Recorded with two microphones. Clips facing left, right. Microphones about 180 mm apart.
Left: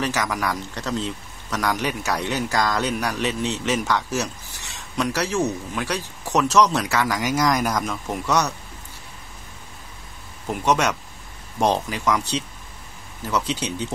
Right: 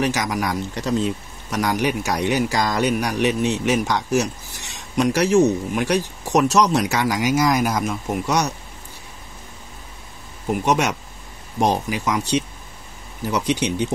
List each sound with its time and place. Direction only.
0.0 s a man's voice: 15° right (ahead or behind)
10.6 s a man's voice: 15° right (ahead or behind)